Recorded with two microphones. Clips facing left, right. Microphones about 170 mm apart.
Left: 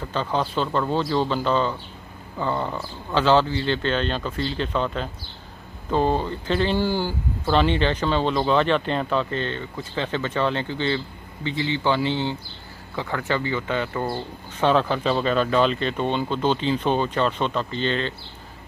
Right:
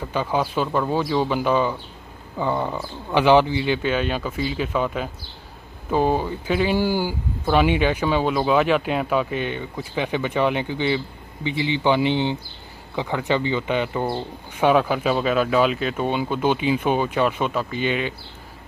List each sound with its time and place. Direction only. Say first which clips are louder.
0.0 s speech: right 2 dB; 10° right (ahead or behind)